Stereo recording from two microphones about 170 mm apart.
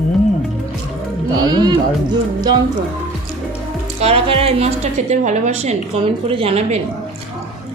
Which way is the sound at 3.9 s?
35° right (ahead or behind).